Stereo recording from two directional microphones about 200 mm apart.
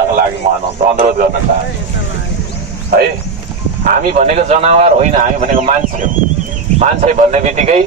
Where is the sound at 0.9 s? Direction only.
45° right (ahead or behind).